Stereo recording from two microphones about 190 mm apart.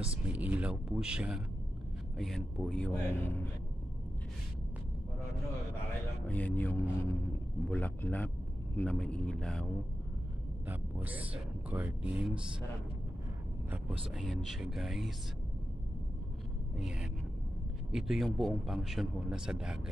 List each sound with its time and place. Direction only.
0.1 s a man's voice: 5° right (ahead or behind); by 3.4 s 10° left (ahead or behind)
6.2 s a man's voice: 10° left (ahead or behind)
10.7 s speech: 10° right (ahead or behind)
13.7 s a man's voice: 10° right (ahead or behind)
16.7 s a man's voice: 5° right (ahead or behind)